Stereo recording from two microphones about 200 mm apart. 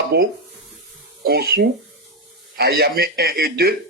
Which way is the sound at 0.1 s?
50° right (ahead or behind).